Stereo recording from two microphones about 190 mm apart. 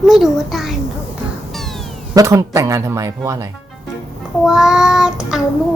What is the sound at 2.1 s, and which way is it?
Speech, 15° right (ahead or behind).